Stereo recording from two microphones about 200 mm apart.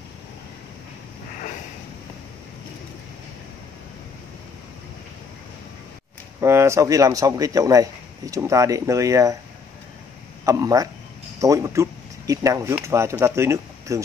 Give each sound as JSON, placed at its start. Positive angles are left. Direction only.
{"t": 6.4, "sound": "a man's voice", "side_deg": -15}
{"t": 10.4, "sound": "a man's voice", "side_deg": -15}